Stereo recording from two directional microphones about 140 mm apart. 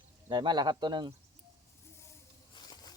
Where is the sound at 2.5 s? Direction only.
30° left (ahead or behind).